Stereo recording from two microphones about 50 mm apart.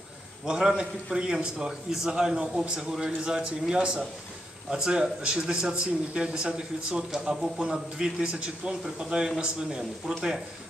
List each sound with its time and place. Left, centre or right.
0.5 s speech: centre